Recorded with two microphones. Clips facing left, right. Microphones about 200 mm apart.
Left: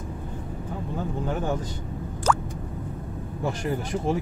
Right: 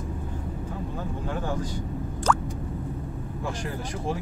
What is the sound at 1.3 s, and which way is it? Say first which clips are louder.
Speech: left 1 dB; 25° left (ahead or behind).